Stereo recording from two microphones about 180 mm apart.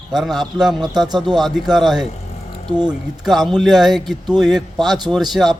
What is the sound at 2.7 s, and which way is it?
Speech, 25° right (ahead or behind).